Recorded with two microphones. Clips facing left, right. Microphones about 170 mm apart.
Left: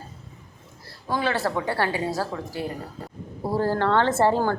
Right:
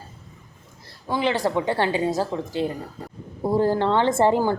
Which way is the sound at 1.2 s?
15° right (ahead or behind).